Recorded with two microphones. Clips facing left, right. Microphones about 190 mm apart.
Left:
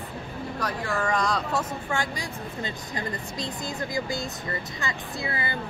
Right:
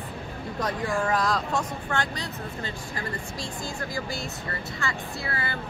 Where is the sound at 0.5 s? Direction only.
20° right (ahead or behind).